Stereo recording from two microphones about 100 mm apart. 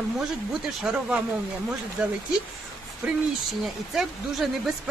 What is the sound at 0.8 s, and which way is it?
Speech, 5° right (ahead or behind).